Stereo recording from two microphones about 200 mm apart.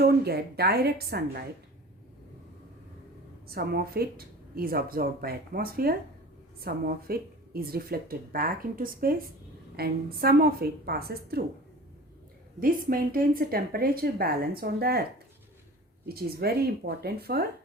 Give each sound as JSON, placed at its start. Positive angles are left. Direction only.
{"t": 0.0, "sound": "speech", "side_deg": -50}
{"t": 3.4, "sound": "speech", "side_deg": -50}
{"t": 12.5, "sound": "speech", "side_deg": -45}
{"t": 16.0, "sound": "speech", "side_deg": -50}